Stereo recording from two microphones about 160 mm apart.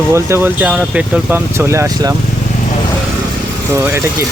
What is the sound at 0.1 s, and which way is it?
Speech, 15° right (ahead or behind).